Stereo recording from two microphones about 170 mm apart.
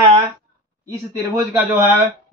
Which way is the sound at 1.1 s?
15° right (ahead or behind).